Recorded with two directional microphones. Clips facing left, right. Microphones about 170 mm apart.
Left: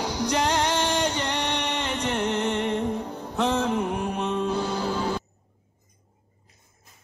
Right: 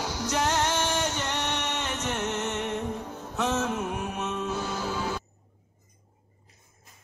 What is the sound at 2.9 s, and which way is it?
Music, 15° left (ahead or behind).